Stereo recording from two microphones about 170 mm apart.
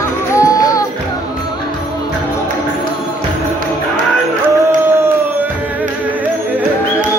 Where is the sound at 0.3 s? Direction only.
20° left (ahead or behind).